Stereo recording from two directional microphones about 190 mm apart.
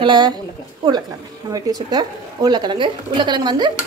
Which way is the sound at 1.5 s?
20° right (ahead or behind).